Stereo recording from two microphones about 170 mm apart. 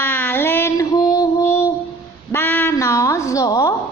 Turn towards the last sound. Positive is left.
turn(degrees=20)  # may be behind; listen again after turning